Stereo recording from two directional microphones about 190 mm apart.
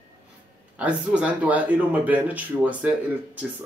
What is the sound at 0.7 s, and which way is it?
Speech, 5° right (ahead or behind).